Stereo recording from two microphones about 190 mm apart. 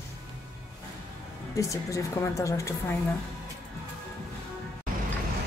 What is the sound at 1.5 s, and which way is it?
Speech, 15° left (ahead or behind).